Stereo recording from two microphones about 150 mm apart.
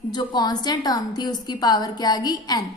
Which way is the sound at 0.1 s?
30° left (ahead or behind).